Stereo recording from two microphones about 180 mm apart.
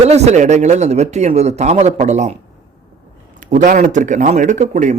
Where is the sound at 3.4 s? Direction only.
45° right (ahead or behind).